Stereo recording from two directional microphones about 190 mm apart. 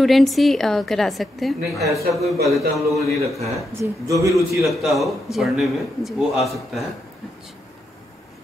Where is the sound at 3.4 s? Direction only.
15° right (ahead or behind).